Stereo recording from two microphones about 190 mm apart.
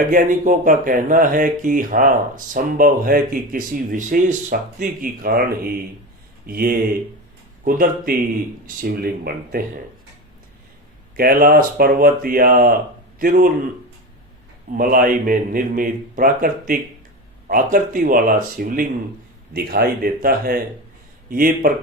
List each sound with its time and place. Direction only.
0.1 s speech: 45° right (ahead or behind)
11.2 s a man's voice: 50° right (ahead or behind)
14.8 s speech: 45° right (ahead or behind)